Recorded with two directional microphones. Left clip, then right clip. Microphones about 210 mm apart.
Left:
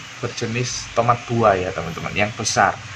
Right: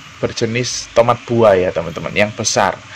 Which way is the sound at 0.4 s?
35° right (ahead or behind).